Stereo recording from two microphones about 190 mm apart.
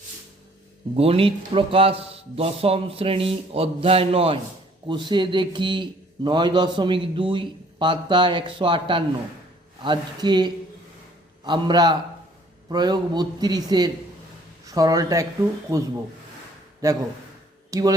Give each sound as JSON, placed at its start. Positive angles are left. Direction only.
{"t": 0.9, "sound": "a man's voice", "side_deg": -30}